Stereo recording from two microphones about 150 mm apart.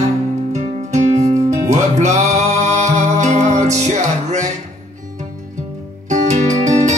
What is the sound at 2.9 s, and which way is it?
Music, 55° right (ahead or behind).